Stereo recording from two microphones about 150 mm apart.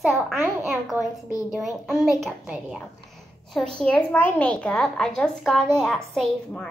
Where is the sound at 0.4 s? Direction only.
15° right (ahead or behind).